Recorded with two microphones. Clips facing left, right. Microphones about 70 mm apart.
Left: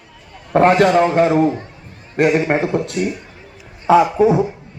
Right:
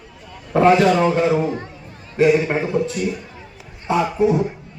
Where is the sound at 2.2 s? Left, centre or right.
Left.